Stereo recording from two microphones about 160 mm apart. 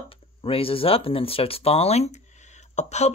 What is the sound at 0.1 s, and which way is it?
Speech, 35° left (ahead or behind).